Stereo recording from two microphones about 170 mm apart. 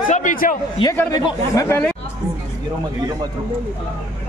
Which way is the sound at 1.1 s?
20° left (ahead or behind).